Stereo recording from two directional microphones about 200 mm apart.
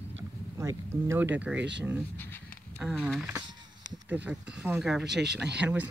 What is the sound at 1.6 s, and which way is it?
Speech, 60° right (ahead or behind).